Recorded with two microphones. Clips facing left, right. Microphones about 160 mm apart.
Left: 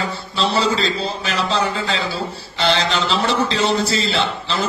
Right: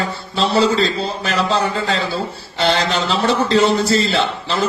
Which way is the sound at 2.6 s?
45° right (ahead or behind).